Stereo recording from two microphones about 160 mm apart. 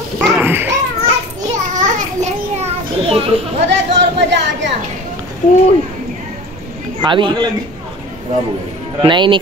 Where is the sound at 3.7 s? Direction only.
90° right.